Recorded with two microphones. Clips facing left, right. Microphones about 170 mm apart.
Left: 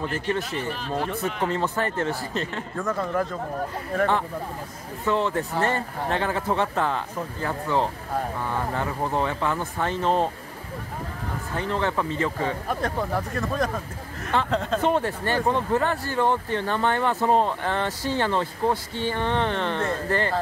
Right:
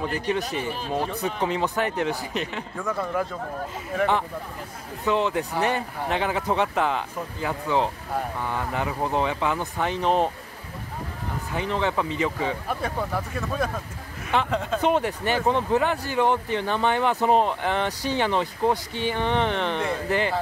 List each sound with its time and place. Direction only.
0.5 s speech: 15° right (ahead or behind)
2.9 s speech: 5° right (ahead or behind)
11.5 s speech: 15° right (ahead or behind)